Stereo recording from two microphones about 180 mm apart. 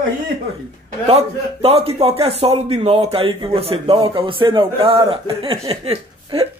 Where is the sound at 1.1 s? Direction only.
35° right (ahead or behind).